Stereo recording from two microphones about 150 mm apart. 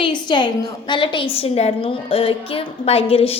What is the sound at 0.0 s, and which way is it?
A woman's voice, 30° left (ahead or behind).